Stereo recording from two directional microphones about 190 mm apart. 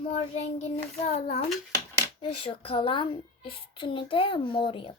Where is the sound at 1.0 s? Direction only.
35° left (ahead or behind).